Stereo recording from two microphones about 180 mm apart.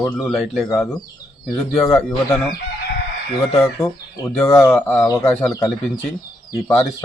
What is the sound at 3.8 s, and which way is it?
Speech, 15° left (ahead or behind).